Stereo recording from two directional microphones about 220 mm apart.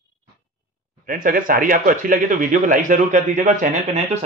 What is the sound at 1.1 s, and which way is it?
A man's voice, 40° right (ahead or behind).